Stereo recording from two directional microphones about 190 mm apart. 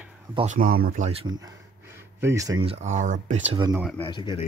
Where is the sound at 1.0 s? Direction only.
30° right (ahead or behind).